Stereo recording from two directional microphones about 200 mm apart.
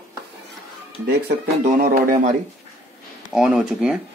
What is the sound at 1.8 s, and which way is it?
Speech, 50° right (ahead or behind).